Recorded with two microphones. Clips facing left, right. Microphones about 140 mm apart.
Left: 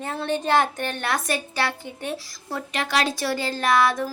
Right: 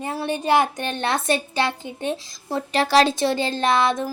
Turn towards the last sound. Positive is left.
turn(degrees=-20)  # may be behind; listen again after turning